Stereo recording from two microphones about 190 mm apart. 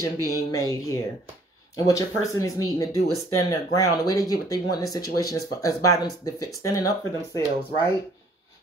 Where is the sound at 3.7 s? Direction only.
20° left (ahead or behind).